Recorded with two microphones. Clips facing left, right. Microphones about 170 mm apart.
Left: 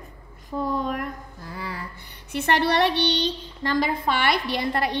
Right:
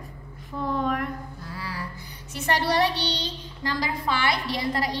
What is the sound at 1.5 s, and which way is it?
A woman's voice, 55° left (ahead or behind).